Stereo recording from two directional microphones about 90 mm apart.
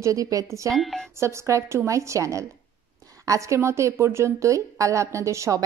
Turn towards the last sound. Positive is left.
turn(degrees=-35)  # may be behind; listen again after turning